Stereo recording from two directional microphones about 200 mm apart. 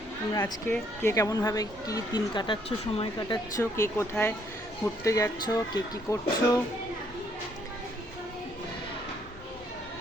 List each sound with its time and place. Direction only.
0.3 s speech: 15° left (ahead or behind)